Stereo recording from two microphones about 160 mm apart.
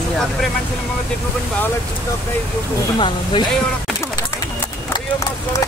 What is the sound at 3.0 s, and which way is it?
Speech, 30° left (ahead or behind).